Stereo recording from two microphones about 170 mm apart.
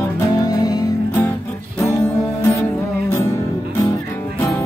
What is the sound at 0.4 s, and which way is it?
Music, 20° left (ahead or behind).